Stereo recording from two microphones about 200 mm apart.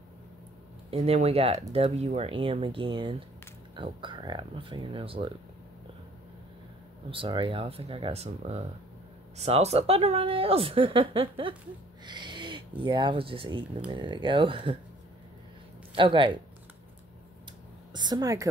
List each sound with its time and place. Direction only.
0.8 s speech: 30° right (ahead or behind)
7.1 s speech: 25° right (ahead or behind)
15.9 s speech: 25° right (ahead or behind)
17.9 s speech: 20° right (ahead or behind)